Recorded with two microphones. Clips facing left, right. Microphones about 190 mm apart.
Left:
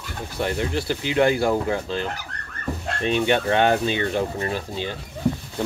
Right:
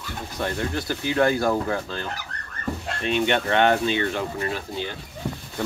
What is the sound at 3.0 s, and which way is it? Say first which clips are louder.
Speech: left 2 dB; 30° left (ahead or behind).